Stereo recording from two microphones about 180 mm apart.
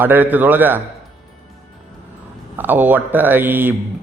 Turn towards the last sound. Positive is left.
turn(degrees=-10)  # may be behind; listen again after turning